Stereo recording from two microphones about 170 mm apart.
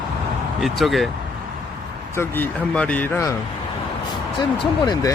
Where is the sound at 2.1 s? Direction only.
15° left (ahead or behind).